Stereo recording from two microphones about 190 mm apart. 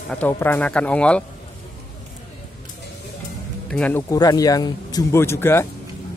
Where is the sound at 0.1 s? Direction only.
10° left (ahead or behind).